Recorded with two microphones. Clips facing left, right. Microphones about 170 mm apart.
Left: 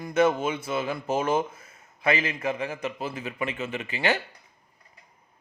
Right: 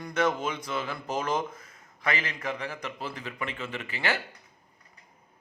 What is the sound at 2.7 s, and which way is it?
A man's voice, 20° left (ahead or behind).